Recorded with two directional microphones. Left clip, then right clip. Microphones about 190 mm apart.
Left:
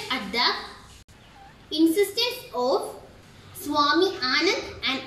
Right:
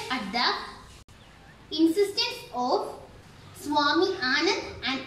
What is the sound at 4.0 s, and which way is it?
Speech, 5° right (ahead or behind).